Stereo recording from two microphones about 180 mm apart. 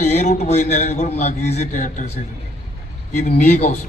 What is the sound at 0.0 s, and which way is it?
A man's voice, 40° left (ahead or behind).